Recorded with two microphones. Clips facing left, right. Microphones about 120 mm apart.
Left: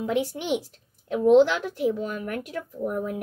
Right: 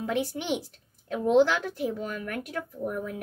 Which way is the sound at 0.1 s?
15° left (ahead or behind).